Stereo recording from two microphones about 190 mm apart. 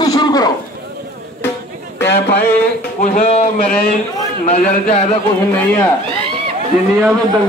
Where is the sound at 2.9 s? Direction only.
40° left (ahead or behind).